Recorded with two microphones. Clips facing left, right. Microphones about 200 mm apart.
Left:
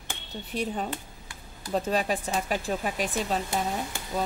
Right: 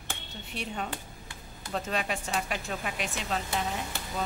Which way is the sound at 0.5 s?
35° left (ahead or behind).